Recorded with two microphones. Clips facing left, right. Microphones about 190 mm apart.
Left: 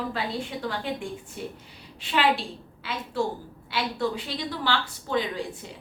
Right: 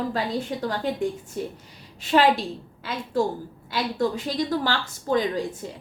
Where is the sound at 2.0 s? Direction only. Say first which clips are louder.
Right 5 dB; 40° right (ahead or behind).